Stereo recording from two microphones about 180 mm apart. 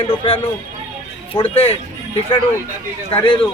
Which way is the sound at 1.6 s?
35° left (ahead or behind).